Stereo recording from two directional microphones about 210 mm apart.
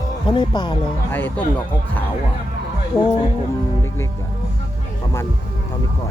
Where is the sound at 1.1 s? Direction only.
10° left (ahead or behind).